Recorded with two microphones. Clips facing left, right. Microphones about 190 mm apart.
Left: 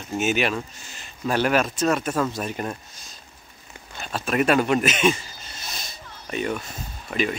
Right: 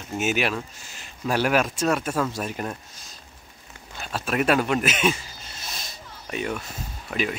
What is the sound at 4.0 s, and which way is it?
Speech, 5° right (ahead or behind).